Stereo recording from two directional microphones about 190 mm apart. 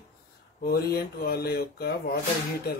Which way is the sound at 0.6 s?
55° left (ahead or behind).